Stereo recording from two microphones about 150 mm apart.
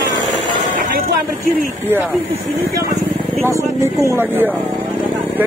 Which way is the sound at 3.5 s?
20° right (ahead or behind).